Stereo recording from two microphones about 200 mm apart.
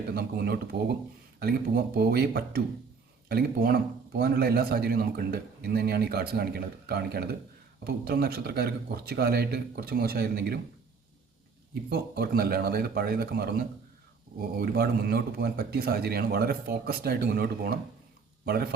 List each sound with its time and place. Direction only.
0.1 s a man's voice: 50° right (ahead or behind)
11.7 s a man's voice: 50° right (ahead or behind)